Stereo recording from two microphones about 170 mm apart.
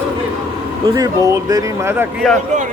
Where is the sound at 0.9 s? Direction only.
20° right (ahead or behind).